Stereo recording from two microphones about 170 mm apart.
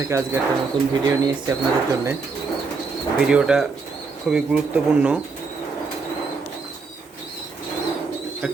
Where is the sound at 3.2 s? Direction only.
5° right (ahead or behind).